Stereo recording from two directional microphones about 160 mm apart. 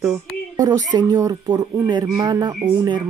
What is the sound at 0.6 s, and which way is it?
Speech, 25° right (ahead or behind).